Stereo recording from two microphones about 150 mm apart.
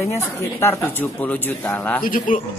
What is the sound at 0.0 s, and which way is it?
Speech, 15° left (ahead or behind).